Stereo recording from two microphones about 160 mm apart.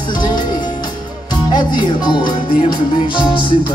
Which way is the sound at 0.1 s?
25° left (ahead or behind).